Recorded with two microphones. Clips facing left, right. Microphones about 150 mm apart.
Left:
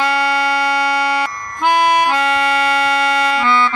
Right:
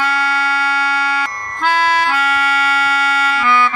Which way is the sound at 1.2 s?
15° left (ahead or behind).